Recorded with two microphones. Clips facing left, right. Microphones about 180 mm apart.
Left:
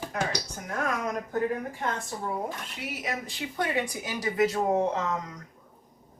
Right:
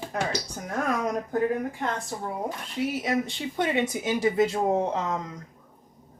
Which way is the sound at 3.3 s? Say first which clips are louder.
Right 3 dB; 25° right (ahead or behind).